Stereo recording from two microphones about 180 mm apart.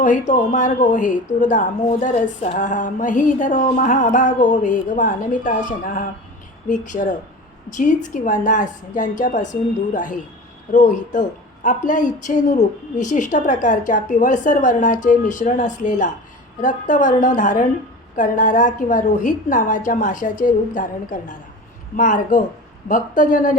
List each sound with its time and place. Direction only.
0.0 s a woman's voice: 45° left (ahead or behind)